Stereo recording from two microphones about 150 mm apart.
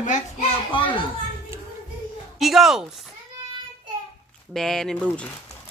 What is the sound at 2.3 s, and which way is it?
Speech, centre (ahead or behind).